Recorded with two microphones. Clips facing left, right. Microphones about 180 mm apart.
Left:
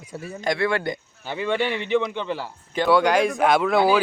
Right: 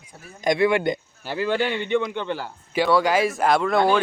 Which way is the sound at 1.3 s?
Centre (ahead or behind).